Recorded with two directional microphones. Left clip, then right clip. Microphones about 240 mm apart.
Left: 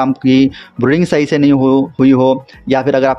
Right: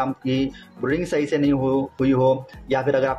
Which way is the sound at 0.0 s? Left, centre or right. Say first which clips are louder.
Left 12 dB; left.